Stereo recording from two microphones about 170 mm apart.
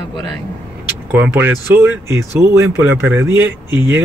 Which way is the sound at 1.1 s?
10° right (ahead or behind).